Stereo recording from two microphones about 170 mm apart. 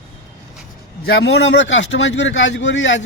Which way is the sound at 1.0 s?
80° left.